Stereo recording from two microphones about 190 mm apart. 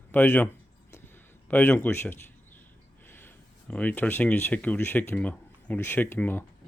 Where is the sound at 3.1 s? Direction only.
10° left (ahead or behind).